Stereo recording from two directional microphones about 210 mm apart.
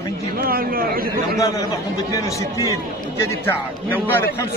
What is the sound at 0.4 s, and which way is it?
Speech, 45° right (ahead or behind).